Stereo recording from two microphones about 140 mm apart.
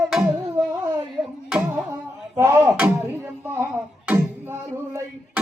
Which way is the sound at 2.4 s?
20° right (ahead or behind).